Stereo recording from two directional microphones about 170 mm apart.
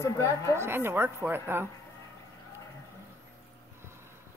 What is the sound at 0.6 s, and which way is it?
Speech, 15° right (ahead or behind).